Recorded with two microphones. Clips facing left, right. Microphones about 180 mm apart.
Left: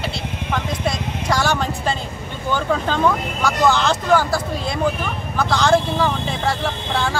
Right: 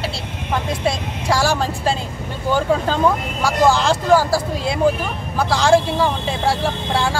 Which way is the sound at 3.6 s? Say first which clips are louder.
Right 1 dB; 35° right (ahead or behind).